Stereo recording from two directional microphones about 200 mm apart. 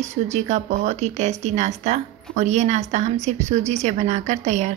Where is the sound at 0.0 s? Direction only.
35° right (ahead or behind).